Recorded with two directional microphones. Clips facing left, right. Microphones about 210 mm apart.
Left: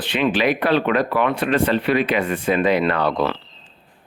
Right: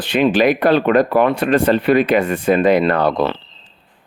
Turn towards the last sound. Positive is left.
turn(degrees=-45)  # may be behind; listen again after turning